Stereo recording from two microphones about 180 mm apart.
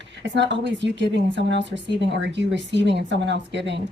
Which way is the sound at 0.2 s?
80° right.